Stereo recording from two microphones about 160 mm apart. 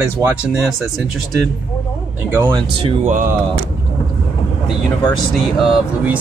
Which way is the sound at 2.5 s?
35° right (ahead or behind).